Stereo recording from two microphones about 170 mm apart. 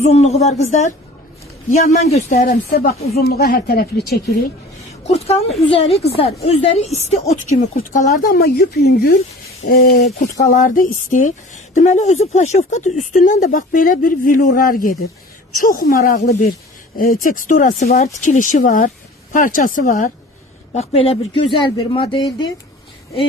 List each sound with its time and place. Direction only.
0.0 s a woman's voice: 40° left (ahead or behind); by 4.2 s 65° left (ahead or behind)
5.0 s a woman's voice: 40° left (ahead or behind); by 9.1 s 75° left (ahead or behind)
10.4 s a woman's voice: 55° left (ahead or behind)
20.7 s speech: 35° left (ahead or behind)